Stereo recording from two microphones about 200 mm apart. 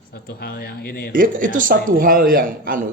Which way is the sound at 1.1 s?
45° right (ahead or behind).